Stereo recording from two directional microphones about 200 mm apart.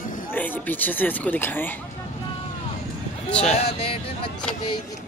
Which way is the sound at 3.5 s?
30° left (ahead or behind).